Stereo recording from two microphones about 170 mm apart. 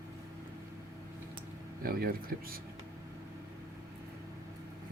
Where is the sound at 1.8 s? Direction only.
60° right (ahead or behind).